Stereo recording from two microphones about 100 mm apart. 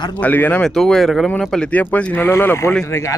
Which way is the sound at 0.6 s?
5° left (ahead or behind).